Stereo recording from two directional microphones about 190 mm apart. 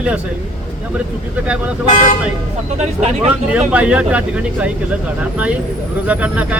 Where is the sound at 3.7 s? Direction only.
5° right (ahead or behind).